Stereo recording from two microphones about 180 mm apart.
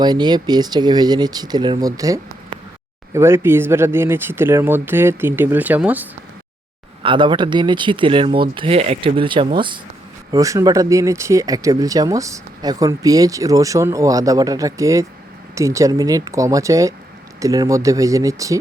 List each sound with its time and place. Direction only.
0.0 s speech: 25° right (ahead or behind)
7.0 s speech: 25° right (ahead or behind)